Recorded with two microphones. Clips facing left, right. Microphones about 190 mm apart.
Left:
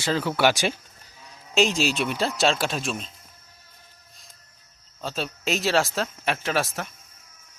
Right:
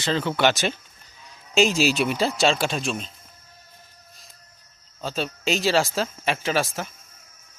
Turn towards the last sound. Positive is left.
turn(degrees=0)  # may be behind; listen again after turning